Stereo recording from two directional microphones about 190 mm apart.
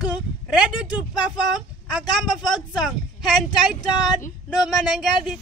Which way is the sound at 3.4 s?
20° left (ahead or behind).